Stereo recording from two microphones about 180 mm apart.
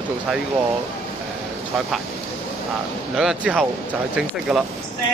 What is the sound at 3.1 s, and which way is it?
Speech, 5° right (ahead or behind).